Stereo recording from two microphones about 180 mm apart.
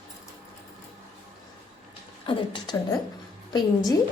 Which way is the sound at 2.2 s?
25° left (ahead or behind).